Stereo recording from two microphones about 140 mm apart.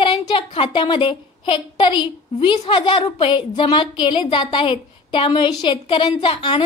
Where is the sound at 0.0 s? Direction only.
40° left (ahead or behind).